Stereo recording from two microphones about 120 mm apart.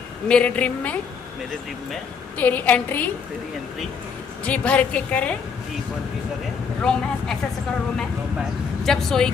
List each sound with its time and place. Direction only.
0.3 s a woman's voice: 10° left (ahead or behind)
2.3 s a woman's voice: 15° left (ahead or behind)
4.5 s a woman's voice: 10° left (ahead or behind)
6.8 s a woman's voice: 5° left (ahead or behind)
8.4 s speech: 5° left (ahead or behind)